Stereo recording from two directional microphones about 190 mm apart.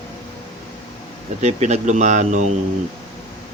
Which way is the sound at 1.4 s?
35° right (ahead or behind).